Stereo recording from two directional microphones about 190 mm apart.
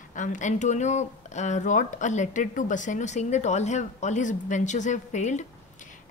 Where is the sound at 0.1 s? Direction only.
40° left (ahead or behind).